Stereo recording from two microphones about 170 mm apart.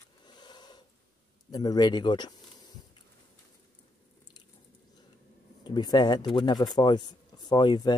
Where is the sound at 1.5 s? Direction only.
20° left (ahead or behind).